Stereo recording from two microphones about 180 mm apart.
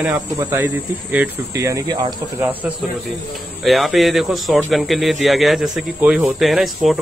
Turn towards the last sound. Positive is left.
turn(degrees=0)  # may be behind; listen again after turning